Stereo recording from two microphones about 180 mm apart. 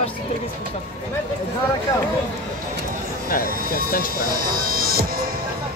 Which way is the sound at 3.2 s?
50° left (ahead or behind).